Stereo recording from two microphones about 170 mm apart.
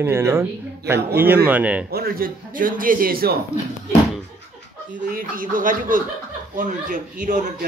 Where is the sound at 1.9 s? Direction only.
60° right (ahead or behind).